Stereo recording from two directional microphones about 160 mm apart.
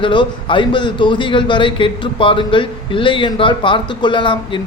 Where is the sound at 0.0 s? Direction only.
30° left (ahead or behind).